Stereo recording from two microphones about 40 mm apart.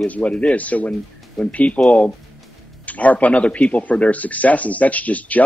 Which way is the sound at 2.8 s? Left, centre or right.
Left.